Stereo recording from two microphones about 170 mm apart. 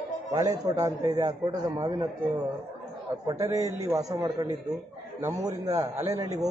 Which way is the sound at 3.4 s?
20° right (ahead or behind).